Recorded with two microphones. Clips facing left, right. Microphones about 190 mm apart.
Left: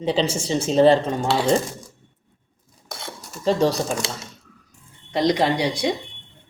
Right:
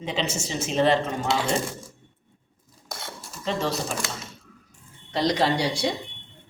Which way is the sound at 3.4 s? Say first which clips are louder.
Left 8 dB; 35° left (ahead or behind).